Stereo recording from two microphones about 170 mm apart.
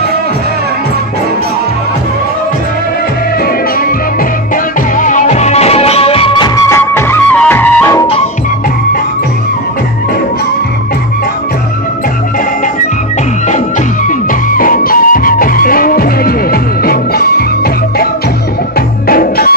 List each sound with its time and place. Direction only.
4.9 s music: 50° left (ahead or behind); by 8.1 s 15° left (ahead or behind)
14.0 s music: 55° left (ahead or behind)
18.8 s music: 60° left (ahead or behind)